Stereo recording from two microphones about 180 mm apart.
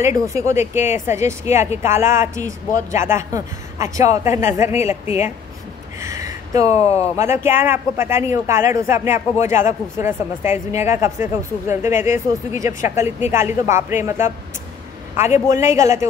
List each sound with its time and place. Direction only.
0.0 s speech: 15° right (ahead or behind)
5.9 s speech: 15° right (ahead or behind)